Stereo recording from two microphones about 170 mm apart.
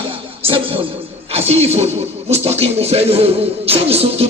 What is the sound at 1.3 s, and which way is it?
A man's voice, 35° right (ahead or behind).